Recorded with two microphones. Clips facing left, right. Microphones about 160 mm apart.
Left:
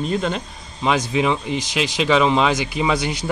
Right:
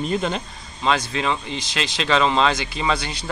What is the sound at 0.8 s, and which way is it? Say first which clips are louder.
Speech: left 3 dB; 15° left (ahead or behind).